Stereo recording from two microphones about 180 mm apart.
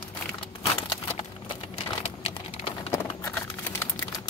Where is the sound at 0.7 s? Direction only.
20° left (ahead or behind).